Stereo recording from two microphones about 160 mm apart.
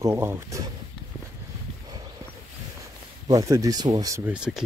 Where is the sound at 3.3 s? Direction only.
20° right (ahead or behind).